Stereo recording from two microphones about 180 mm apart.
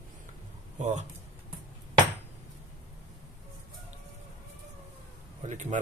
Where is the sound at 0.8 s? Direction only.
40° right (ahead or behind).